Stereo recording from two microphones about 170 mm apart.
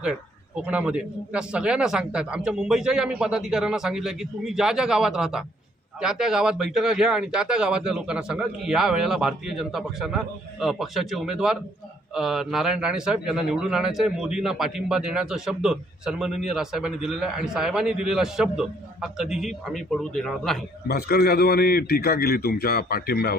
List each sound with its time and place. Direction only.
0.0 s a man's voice: 5° right (ahead or behind)
20.8 s a man's voice: 65° left (ahead or behind)